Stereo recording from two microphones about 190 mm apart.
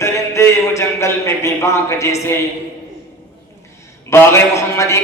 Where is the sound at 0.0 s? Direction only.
15° left (ahead or behind).